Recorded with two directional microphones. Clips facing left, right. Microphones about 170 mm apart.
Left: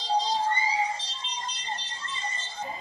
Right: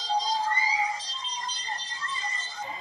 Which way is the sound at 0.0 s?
25° left (ahead or behind).